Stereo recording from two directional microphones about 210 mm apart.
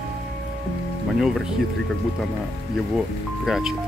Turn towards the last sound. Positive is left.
turn(degrees=0)  # may be behind; listen again after turning